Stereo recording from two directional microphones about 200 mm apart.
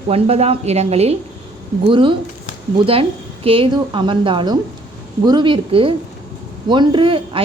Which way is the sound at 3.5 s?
25° right (ahead or behind).